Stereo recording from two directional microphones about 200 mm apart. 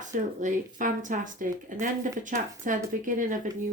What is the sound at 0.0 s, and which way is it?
Speech, 40° right (ahead or behind).